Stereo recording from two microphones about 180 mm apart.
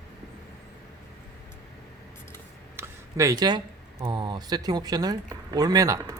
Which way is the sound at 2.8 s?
20° right (ahead or behind).